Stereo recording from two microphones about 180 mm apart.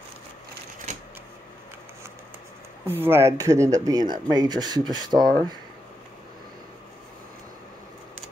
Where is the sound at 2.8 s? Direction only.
10° right (ahead or behind).